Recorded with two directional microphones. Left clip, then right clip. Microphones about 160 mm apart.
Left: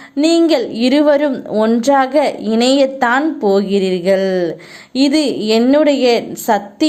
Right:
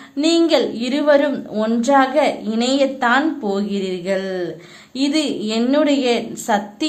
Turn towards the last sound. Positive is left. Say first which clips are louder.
# left 5 dB
turn(degrees=35)  # may be behind; listen again after turning